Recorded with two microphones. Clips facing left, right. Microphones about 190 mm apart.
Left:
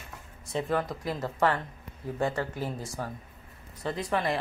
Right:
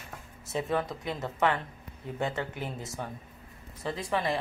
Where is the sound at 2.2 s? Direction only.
20° right (ahead or behind).